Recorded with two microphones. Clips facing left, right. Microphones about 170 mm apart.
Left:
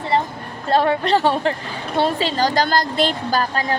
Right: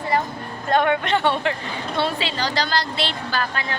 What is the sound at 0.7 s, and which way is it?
A woman's voice, 35° left (ahead or behind).